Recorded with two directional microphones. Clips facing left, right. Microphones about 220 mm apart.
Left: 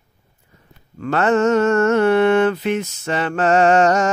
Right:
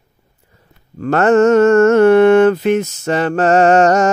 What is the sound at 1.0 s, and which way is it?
Mantra, 45° right (ahead or behind).